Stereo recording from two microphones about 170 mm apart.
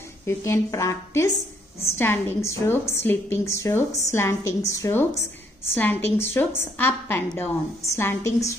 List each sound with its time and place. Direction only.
0.2 s a woman's voice: 15° left (ahead or behind)